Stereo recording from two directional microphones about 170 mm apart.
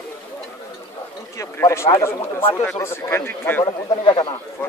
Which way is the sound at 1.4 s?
15° left (ahead or behind).